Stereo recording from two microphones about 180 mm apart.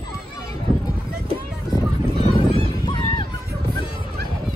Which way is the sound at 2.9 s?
25° left (ahead or behind).